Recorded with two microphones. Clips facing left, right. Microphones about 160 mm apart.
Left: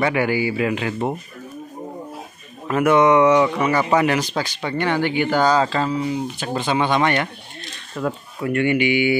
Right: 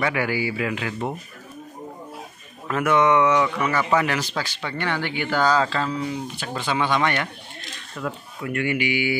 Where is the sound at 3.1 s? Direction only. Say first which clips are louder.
Left 4 dB; 35° left (ahead or behind).